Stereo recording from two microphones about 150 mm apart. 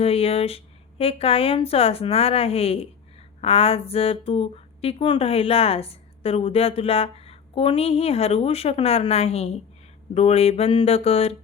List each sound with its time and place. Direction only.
0.0 s speech: 40° left (ahead or behind)